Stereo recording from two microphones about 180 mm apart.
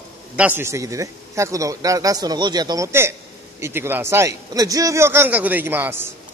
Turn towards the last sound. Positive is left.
turn(degrees=-10)  # may be behind; listen again after turning